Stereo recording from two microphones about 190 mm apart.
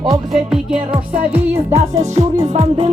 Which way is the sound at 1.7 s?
35° right (ahead or behind).